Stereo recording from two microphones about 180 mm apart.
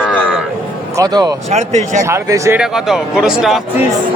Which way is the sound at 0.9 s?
20° right (ahead or behind).